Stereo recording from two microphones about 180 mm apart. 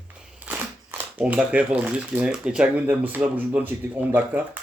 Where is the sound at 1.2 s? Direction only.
10° right (ahead or behind).